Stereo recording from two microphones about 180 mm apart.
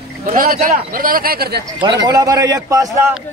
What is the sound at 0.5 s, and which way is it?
Speech, 50° right (ahead or behind).